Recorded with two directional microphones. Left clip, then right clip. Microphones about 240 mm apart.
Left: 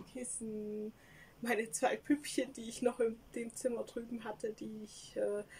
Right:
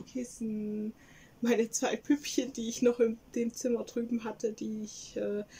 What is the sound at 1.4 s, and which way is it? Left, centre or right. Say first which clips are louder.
Speech: right 5 dB; centre.